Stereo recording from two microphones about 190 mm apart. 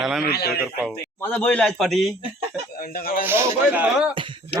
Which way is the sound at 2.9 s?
50° left (ahead or behind).